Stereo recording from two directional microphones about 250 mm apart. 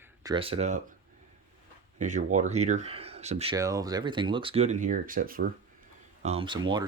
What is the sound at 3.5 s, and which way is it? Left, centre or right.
Speech, centre.